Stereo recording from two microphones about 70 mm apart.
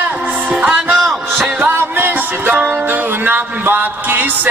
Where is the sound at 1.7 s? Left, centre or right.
Right.